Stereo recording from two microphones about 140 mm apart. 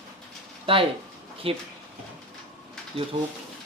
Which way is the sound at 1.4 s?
40° right (ahead or behind).